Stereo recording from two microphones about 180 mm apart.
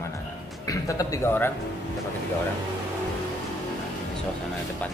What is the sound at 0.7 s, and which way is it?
Speech, 20° left (ahead or behind).